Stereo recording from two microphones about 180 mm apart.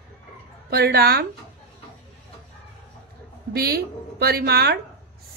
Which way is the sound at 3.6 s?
60° right (ahead or behind).